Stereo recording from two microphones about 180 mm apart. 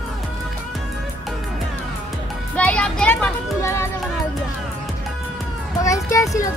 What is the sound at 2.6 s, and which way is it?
Music, 5° left (ahead or behind).